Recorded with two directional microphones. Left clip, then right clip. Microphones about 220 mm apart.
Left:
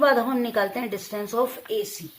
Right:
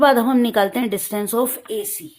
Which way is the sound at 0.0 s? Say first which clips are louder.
Right 5 dB; 40° right (ahead or behind).